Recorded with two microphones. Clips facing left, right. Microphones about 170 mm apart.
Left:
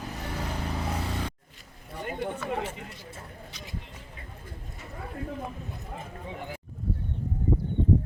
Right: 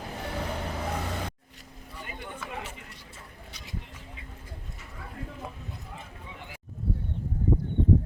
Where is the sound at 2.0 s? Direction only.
50° left (ahead or behind).